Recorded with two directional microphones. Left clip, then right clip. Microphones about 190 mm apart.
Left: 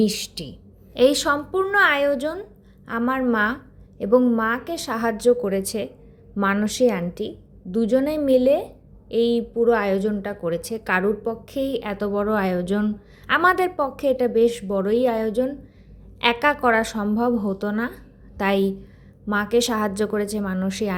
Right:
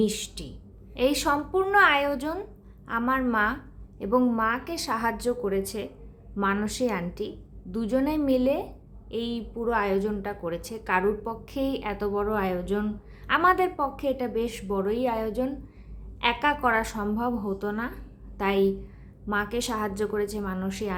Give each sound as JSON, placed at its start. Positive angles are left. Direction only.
{"t": 0.0, "sound": "a woman's voice", "side_deg": 25}